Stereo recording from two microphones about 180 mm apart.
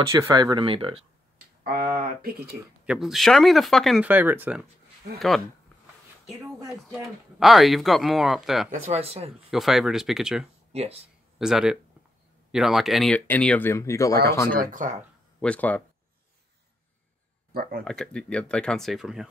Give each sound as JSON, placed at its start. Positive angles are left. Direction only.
{"t": 0.0, "sound": "speech", "side_deg": -15}
{"t": 1.6, "sound": "speech", "side_deg": -55}
{"t": 2.8, "sound": "speech", "side_deg": -5}
{"t": 6.9, "sound": "speech", "side_deg": 0}
{"t": 8.8, "sound": "speech", "side_deg": -35}
{"t": 9.5, "sound": "speech", "side_deg": 0}
{"t": 10.7, "sound": "speech", "side_deg": -35}
{"t": 11.3, "sound": "speech", "side_deg": -5}
{"t": 14.6, "sound": "speech", "side_deg": -45}
{"t": 15.4, "sound": "speech", "side_deg": 10}
{"t": 17.5, "sound": "speech", "side_deg": -55}
{"t": 17.8, "sound": "speech", "side_deg": 5}